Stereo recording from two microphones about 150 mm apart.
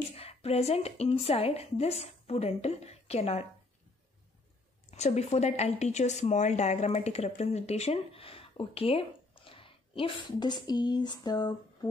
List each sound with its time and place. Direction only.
0.1 s speech: 40° left (ahead or behind)
4.9 s speech: 50° left (ahead or behind); by 11.9 s 30° left (ahead or behind)